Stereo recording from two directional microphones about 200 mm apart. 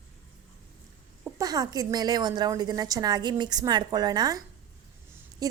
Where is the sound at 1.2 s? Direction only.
15° right (ahead or behind).